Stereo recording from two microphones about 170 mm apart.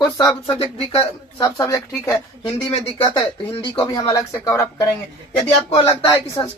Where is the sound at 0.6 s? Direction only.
35° left (ahead or behind).